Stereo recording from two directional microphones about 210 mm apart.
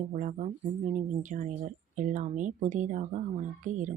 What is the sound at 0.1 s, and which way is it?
Speech, 35° right (ahead or behind).